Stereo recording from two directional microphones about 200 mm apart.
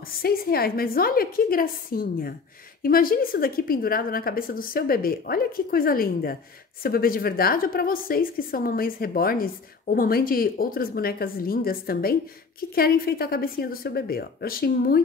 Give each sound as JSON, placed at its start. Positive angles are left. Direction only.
{"t": 0.2, "sound": "a woman's voice", "side_deg": 50}